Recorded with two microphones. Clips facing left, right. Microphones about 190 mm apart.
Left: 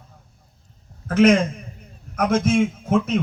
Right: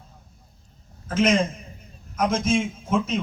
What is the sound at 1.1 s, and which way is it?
A man's voice, 65° left (ahead or behind).